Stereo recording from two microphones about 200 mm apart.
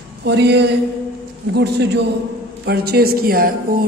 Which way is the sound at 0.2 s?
60° right (ahead or behind).